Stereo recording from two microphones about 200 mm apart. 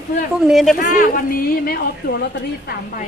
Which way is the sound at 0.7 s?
40° left (ahead or behind).